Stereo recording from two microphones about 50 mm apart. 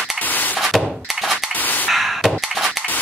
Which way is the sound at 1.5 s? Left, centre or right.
Left.